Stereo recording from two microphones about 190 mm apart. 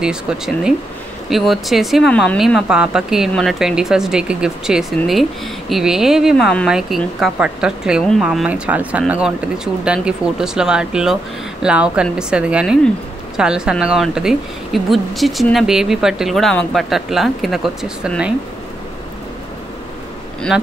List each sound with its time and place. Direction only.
0.0 s speech: 5° right (ahead or behind)